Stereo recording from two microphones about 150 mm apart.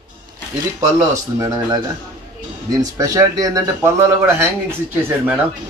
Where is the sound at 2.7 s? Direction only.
25° right (ahead or behind).